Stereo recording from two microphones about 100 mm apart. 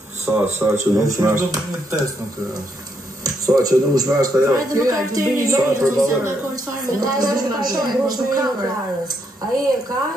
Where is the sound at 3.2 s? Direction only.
40° right (ahead or behind).